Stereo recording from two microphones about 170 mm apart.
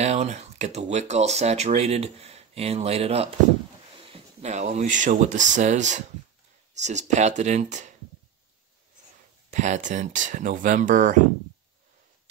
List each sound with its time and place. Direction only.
0.0 s speech: 40° right (ahead or behind)
9.5 s speech: 45° right (ahead or behind)